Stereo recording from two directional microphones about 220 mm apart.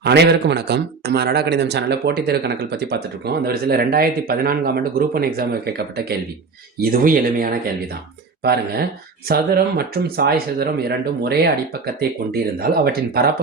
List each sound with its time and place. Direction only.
0.0 s a man's voice: 50° right (ahead or behind)
9.2 s a man's voice: 45° right (ahead or behind)